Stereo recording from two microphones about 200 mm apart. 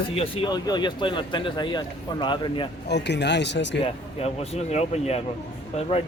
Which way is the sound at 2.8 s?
60° left (ahead or behind).